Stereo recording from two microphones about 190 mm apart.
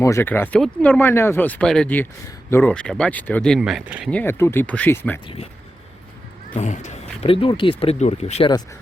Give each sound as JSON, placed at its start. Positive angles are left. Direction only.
{"t": 0.0, "sound": "speech", "side_deg": 15}
{"t": 4.1, "sound": "speech", "side_deg": 10}
{"t": 6.5, "sound": "speech", "side_deg": 40}